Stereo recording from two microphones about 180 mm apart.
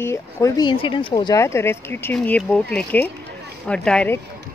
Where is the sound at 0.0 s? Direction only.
15° left (ahead or behind).